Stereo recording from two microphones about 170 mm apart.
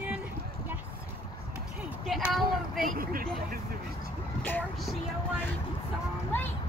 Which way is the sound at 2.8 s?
55° right (ahead or behind).